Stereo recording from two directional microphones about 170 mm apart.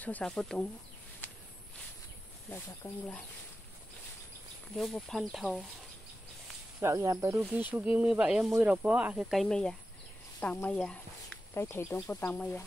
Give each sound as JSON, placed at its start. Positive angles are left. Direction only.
{"t": 0.0, "sound": "speech", "side_deg": 5}
{"t": 1.2, "sound": "walk", "side_deg": 10}
{"t": 2.5, "sound": "speech", "side_deg": 10}
{"t": 4.7, "sound": "speech", "side_deg": 0}
{"t": 6.8, "sound": "speech", "side_deg": -15}
{"t": 10.4, "sound": "a sound", "side_deg": 10}
{"t": 11.6, "sound": "speech", "side_deg": 15}